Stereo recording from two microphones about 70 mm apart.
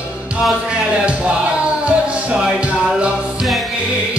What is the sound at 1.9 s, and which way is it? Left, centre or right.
Music, centre.